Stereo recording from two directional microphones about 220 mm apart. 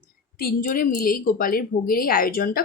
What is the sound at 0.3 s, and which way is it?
A woman's voice, 40° left (ahead or behind).